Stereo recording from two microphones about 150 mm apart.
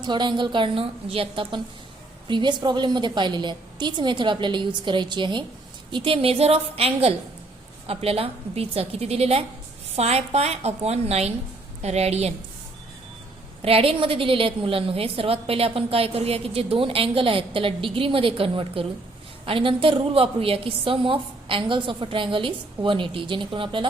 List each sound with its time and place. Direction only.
0.0 s a woman's voice: 30° right (ahead or behind)
13.6 s a woman's voice: 40° right (ahead or behind)